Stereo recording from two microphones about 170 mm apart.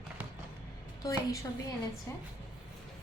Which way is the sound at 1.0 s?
20° left (ahead or behind).